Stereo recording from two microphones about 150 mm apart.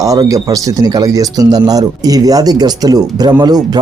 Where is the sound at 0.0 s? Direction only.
25° right (ahead or behind).